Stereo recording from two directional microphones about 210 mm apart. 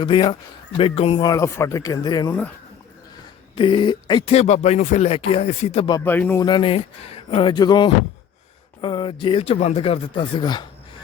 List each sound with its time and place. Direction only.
0.0 s speech: 25° left (ahead or behind)
3.5 s speech: 25° left (ahead or behind)
6.1 s speech: 10° left (ahead or behind)
6.4 s speech: 25° left (ahead or behind)